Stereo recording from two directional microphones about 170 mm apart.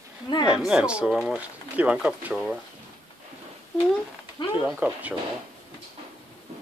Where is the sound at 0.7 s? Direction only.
5° right (ahead or behind).